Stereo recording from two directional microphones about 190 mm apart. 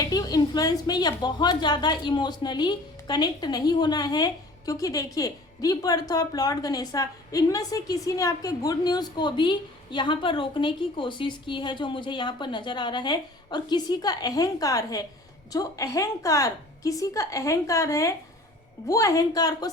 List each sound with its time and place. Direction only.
0.0 s a woman's voice: 20° left (ahead or behind)